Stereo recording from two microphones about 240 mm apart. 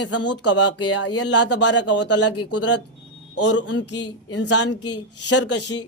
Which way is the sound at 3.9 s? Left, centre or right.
Left.